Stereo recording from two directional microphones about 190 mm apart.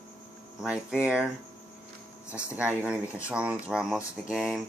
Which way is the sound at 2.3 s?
5° right (ahead or behind).